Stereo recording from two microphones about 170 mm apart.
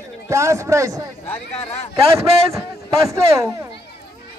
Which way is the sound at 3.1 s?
15° right (ahead or behind).